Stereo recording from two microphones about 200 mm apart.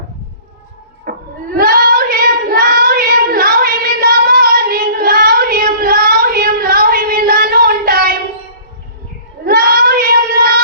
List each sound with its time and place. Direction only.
1.1 s a sound: 50° right (ahead or behind)
1.5 s child singing: 50° right (ahead or behind)
9.4 s child singing: 50° right (ahead or behind)